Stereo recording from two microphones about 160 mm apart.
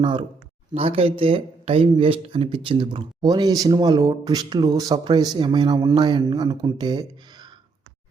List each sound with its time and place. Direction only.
0.0 s speech: 30° right (ahead or behind)